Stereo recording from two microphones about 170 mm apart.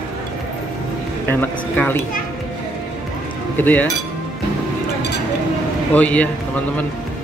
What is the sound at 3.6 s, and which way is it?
Speech, 10° left (ahead or behind).